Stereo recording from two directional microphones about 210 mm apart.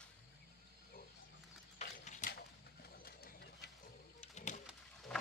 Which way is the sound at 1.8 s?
35° left (ahead or behind).